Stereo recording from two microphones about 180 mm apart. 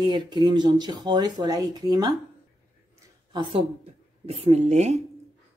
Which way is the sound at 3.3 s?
25° right (ahead or behind).